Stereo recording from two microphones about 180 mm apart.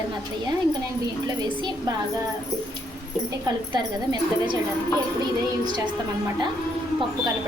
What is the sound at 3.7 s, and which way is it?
Speech, 25° right (ahead or behind).